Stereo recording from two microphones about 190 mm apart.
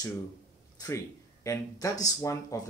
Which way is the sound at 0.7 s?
15° left (ahead or behind).